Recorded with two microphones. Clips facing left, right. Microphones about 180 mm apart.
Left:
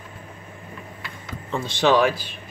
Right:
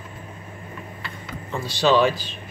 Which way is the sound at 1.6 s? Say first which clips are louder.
Even; 20° left (ahead or behind).